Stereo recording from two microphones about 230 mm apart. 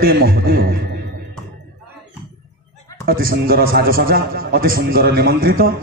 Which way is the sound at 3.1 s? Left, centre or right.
Right.